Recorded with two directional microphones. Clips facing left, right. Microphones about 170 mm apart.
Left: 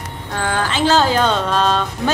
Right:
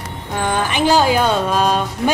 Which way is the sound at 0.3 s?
15° right (ahead or behind).